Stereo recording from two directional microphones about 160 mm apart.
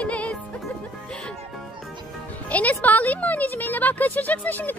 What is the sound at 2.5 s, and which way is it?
Speech, 10° left (ahead or behind).